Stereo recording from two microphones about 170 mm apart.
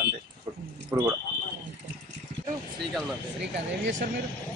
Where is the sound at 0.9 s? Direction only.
20° right (ahead or behind).